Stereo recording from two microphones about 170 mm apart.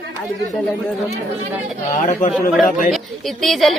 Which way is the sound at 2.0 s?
45° left (ahead or behind).